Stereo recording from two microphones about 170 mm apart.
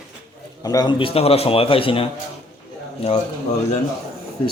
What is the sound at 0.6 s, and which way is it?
A man's voice, 25° left (ahead or behind).